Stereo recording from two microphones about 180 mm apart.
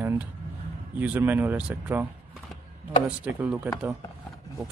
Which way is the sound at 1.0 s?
10° right (ahead or behind).